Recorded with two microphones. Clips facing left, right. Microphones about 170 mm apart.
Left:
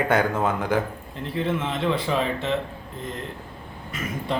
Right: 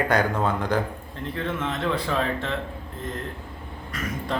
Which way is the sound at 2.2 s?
5° left (ahead or behind).